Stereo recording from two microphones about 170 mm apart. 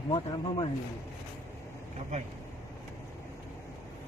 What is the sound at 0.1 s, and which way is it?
Speech, 30° left (ahead or behind).